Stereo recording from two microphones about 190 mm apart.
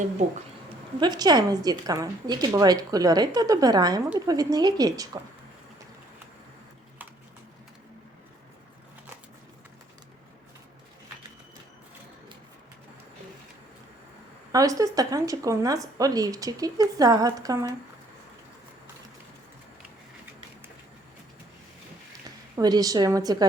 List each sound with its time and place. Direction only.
0.9 s a woman's voice: 20° right (ahead or behind)
14.5 s a woman's voice: 20° right (ahead or behind)
22.5 s a woman's voice: 20° right (ahead or behind)